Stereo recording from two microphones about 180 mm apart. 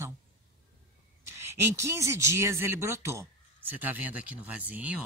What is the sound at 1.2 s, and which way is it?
Speech, 15° right (ahead or behind).